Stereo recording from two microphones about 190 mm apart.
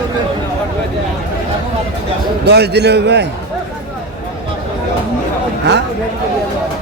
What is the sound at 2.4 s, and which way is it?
Speech, 60° right (ahead or behind).